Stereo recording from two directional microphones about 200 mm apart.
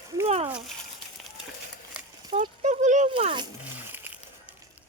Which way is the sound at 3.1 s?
25° right (ahead or behind).